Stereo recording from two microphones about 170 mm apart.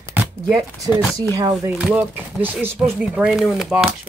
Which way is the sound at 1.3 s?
20° right (ahead or behind).